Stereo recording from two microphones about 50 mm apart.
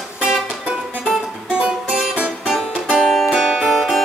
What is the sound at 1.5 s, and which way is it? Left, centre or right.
Music, centre.